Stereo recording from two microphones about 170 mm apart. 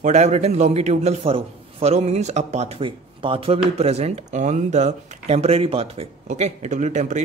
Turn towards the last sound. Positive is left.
turn(degrees=-45)  # may be behind; listen again after turning